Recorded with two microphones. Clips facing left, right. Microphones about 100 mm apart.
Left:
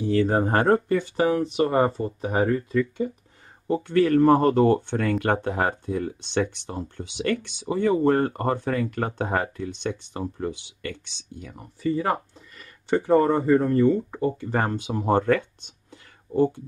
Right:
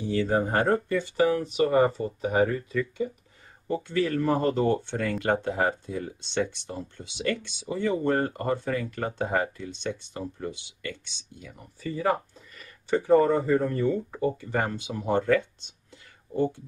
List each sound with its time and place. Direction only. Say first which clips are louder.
0.0 s speech: left 4 dB; 50° left (ahead or behind)
1.2 s speech: even; 30° left (ahead or behind)
2.4 s speech: left 3 dB; 45° left (ahead or behind)
3.8 s speech: left 8 dB; 55° left (ahead or behind)
11.5 s speech: left 8 dB; 30° left (ahead or behind)
12.1 s speech: left 1 dB; 40° left (ahead or behind)
14.4 s speech: left 3 dB; 50° left (ahead or behind)